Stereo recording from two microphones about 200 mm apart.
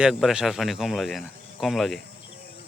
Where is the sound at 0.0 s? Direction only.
Centre (ahead or behind).